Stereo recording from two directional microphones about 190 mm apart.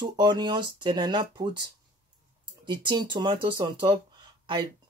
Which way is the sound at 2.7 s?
25° right (ahead or behind).